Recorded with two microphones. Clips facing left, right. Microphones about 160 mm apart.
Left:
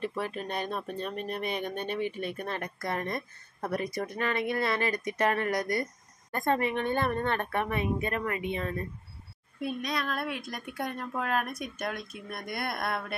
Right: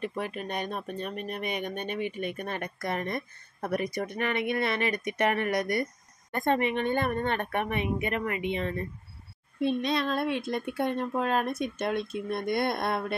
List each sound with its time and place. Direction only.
0.0 s a woman's voice: 15° right (ahead or behind)